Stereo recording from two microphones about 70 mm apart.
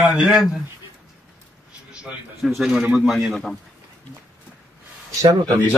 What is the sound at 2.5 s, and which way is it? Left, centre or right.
Speech, centre.